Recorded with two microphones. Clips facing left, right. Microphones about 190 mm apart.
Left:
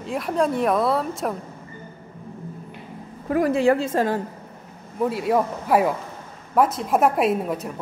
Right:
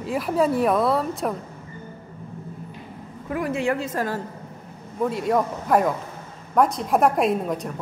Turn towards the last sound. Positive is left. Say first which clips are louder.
# left 1 dB
turn(degrees=5)  # may be behind; listen again after turning